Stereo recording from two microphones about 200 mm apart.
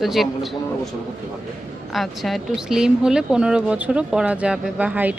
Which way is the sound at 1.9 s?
Centre (ahead or behind).